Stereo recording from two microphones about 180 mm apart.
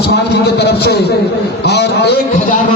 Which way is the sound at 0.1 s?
65° left (ahead or behind).